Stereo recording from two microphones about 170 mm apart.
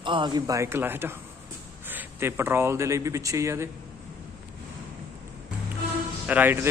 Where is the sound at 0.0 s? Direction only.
25° right (ahead or behind).